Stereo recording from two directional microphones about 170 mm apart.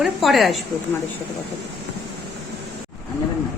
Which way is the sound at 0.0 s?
Centre (ahead or behind).